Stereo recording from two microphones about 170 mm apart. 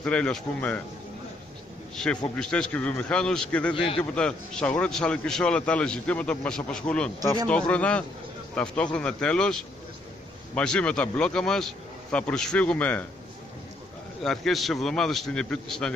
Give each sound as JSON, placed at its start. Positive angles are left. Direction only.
{"t": 0.0, "sound": "a man's voice", "side_deg": 5}
{"t": 2.0, "sound": "a man's voice", "side_deg": 5}
{"t": 3.7, "sound": "a man's voice", "side_deg": 30}
{"t": 4.0, "sound": "a man's voice", "side_deg": 5}
{"t": 14.2, "sound": "a man's voice", "side_deg": 0}